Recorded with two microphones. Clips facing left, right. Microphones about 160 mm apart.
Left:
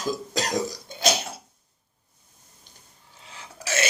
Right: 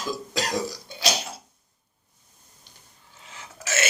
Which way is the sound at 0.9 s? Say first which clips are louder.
Left 3 dB; 50° left (ahead or behind).